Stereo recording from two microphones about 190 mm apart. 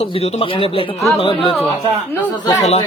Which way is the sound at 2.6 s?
35° left (ahead or behind).